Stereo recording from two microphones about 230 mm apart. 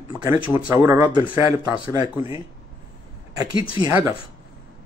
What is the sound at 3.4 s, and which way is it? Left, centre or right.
Speech, left.